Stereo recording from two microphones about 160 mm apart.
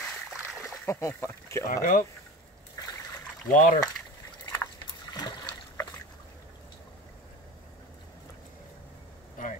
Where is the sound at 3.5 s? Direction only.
55° left (ahead or behind).